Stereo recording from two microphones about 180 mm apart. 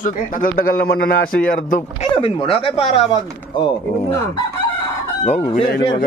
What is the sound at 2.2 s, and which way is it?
Speech, 30° left (ahead or behind).